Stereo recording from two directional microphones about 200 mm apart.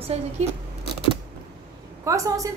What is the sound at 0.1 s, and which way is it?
Speech, 30° right (ahead or behind).